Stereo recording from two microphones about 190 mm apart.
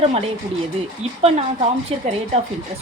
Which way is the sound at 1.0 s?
35° right (ahead or behind).